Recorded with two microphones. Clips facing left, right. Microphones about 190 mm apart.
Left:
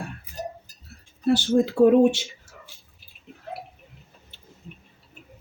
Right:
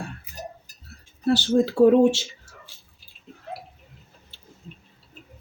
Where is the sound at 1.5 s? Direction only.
15° left (ahead or behind).